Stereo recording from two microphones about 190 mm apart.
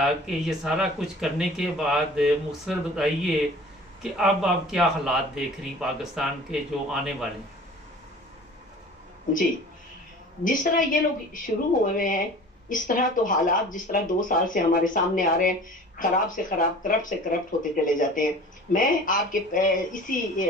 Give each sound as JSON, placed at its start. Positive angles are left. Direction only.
{"t": 0.0, "sound": "speech", "side_deg": -5}
{"t": 10.4, "sound": "speech", "side_deg": 45}
{"t": 17.9, "sound": "speech", "side_deg": 45}